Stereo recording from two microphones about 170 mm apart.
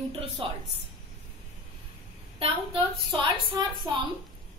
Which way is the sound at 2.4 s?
30° right (ahead or behind).